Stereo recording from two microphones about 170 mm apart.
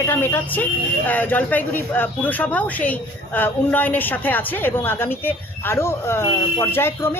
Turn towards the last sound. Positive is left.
turn(degrees=15)  # may be behind; listen again after turning